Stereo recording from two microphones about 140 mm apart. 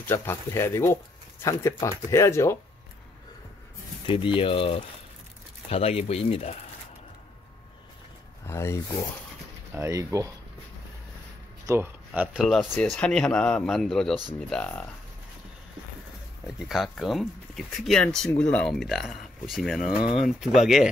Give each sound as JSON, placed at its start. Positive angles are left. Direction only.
{"t": 0.0, "sound": "speech", "side_deg": 15}
{"t": 4.4, "sound": "speech", "side_deg": 40}
{"t": 8.5, "sound": "speech", "side_deg": 20}
{"t": 9.8, "sound": "speech", "side_deg": -25}
{"t": 11.6, "sound": "speech", "side_deg": -20}
{"t": 12.2, "sound": "speech", "side_deg": 0}
{"t": 16.5, "sound": "speech", "side_deg": 0}